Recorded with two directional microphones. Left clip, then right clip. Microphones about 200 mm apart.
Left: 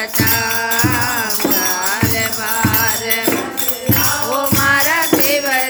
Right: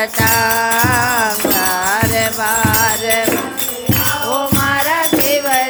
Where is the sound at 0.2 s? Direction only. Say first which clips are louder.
Right 3 dB; 30° right (ahead or behind).